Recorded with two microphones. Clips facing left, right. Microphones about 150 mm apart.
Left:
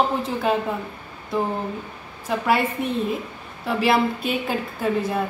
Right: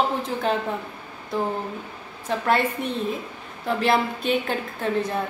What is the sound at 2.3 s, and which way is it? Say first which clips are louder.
A woman's voice: left 1 dB; 5° left (ahead or behind).